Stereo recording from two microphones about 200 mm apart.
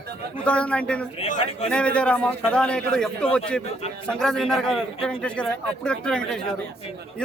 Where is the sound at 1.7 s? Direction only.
5° left (ahead or behind).